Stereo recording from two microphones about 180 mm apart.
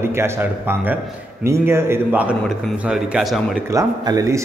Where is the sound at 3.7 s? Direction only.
20° right (ahead or behind).